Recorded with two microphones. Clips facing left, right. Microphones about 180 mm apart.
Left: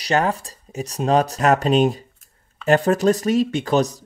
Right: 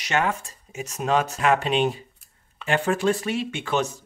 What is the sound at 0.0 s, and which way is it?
Speech, 35° left (ahead or behind).